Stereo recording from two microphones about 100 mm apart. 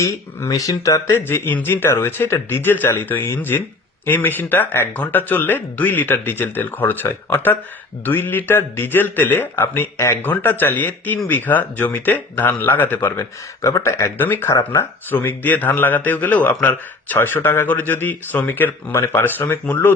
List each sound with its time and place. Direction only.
0.0 s speech: 35° left (ahead or behind)
1.1 s speech: 20° left (ahead or behind)
13.6 s speech: 30° left (ahead or behind)